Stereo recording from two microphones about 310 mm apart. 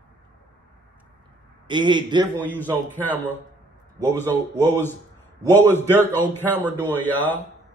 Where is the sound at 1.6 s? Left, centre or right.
Centre.